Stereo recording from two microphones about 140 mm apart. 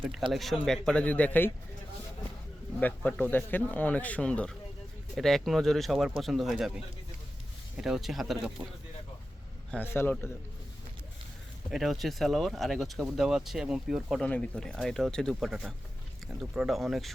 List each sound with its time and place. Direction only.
0.3 s speech: centre (ahead or behind)
2.8 s speech: 10° left (ahead or behind)
7.8 s speech: 5° right (ahead or behind)
9.7 s speech: 15° left (ahead or behind)
11.7 s speech: centre (ahead or behind)
14.3 s speech: 10° left (ahead or behind)